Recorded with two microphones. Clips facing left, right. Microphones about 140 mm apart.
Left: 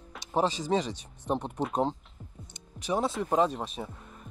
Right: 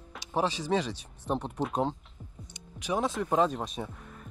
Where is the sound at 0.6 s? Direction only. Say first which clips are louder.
Left 1 dB; 15° left (ahead or behind).